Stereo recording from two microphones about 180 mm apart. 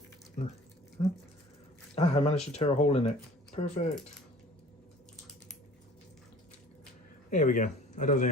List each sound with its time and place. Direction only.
0.4 s speech: 45° left (ahead or behind)
2.0 s speech: 35° left (ahead or behind)
7.3 s speech: 45° left (ahead or behind)